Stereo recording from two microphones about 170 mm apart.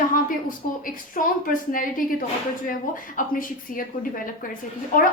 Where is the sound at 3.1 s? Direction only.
55° left (ahead or behind).